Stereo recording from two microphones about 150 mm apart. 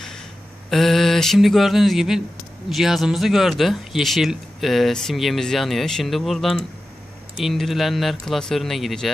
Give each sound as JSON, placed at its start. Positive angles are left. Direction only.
{"t": 0.7, "sound": "speech", "side_deg": 0}